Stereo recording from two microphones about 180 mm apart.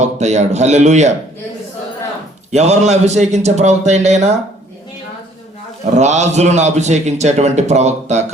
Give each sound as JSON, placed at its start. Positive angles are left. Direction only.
{"t": 0.0, "sound": "a man's voice", "side_deg": -40}
{"t": 2.5, "sound": "a man's voice", "side_deg": -40}
{"t": 5.8, "sound": "a man's voice", "side_deg": -40}